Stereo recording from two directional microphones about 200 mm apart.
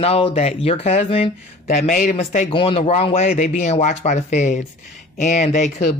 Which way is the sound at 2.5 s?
25° left (ahead or behind).